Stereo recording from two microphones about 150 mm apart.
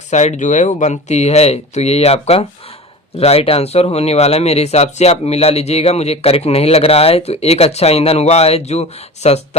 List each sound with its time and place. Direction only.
0.1 s speech: 50° left (ahead or behind)